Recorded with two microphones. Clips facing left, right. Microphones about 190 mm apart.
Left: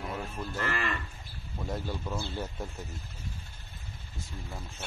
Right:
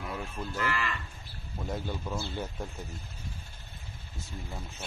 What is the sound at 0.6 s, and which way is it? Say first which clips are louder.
Moo: even; 45° left (ahead or behind).